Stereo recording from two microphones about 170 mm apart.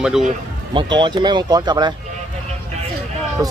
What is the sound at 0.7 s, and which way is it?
Speech, 30° right (ahead or behind).